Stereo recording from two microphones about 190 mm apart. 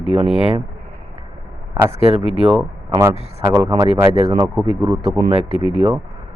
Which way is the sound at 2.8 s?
25° right (ahead or behind).